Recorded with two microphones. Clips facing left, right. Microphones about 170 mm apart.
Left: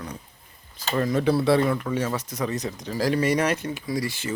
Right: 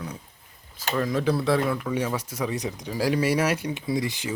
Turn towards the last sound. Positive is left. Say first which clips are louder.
# right 1 dB
turn(degrees=-15)  # may be behind; listen again after turning